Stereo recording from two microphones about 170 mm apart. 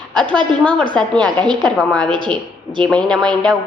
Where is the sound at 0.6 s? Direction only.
10° left (ahead or behind).